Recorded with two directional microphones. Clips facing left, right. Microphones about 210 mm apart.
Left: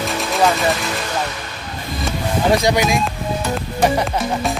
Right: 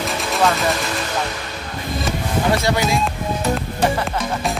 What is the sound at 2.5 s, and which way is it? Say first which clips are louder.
Speech: left 3 dB; 15° left (ahead or behind).